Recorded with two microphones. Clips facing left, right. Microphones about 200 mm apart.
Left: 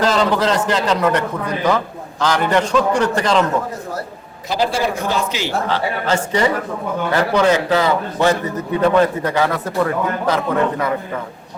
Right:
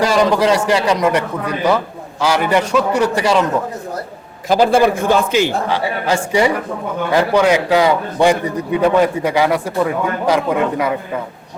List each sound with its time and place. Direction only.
0.0 s a man's voice: 10° right (ahead or behind)
4.4 s a man's voice: 50° right (ahead or behind)
5.6 s a man's voice: 10° right (ahead or behind)